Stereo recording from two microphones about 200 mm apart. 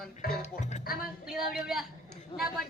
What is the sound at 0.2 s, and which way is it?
Speech, 50° left (ahead or behind).